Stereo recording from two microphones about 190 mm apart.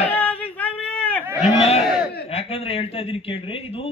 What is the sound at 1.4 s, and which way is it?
A man's voice, 35° left (ahead or behind).